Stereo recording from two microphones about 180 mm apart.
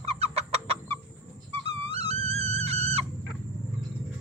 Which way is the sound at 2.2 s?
35° right (ahead or behind).